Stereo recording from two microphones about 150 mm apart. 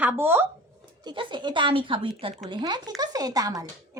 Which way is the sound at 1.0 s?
30° right (ahead or behind).